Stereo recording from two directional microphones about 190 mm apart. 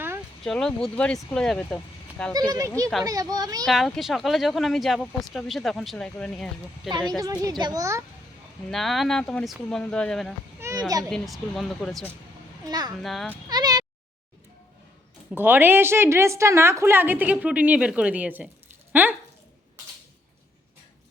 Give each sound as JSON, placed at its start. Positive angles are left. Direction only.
{"t": 0.4, "sound": "speech", "side_deg": 5}
{"t": 2.5, "sound": "a woman's voice", "side_deg": -15}
{"t": 3.7, "sound": "speech", "side_deg": 0}
{"t": 7.2, "sound": "a child's voice", "side_deg": -20}
{"t": 8.7, "sound": "speech", "side_deg": 0}
{"t": 10.6, "sound": "children playing", "side_deg": -15}
{"t": 11.1, "sound": "speech", "side_deg": 0}
{"t": 12.6, "sound": "a child's voice", "side_deg": -20}
{"t": 12.9, "sound": "speech", "side_deg": 0}
{"t": 13.5, "sound": "a sound", "side_deg": -20}
{"t": 15.3, "sound": "a woman's voice", "side_deg": -10}